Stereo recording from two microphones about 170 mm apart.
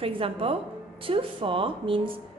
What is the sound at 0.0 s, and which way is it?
A woman's voice, 35° right (ahead or behind).